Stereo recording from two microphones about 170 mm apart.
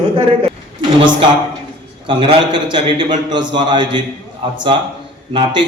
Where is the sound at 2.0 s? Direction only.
30° right (ahead or behind).